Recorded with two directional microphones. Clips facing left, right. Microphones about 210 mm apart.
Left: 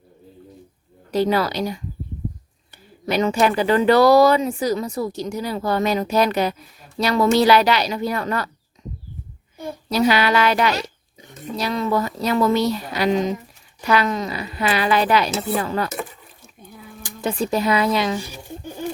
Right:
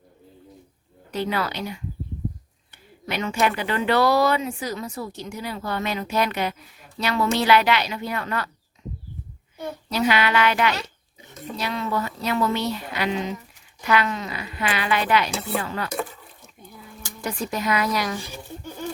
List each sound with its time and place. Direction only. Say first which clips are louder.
1.1 s speech: left 7 dB; 35° left (ahead or behind)
3.1 s speech: left 5 dB; 35° left (ahead or behind)
9.9 s speech: left 4 dB; 35° left (ahead or behind)
16.6 s speech: left 3 dB; 20° left (ahead or behind)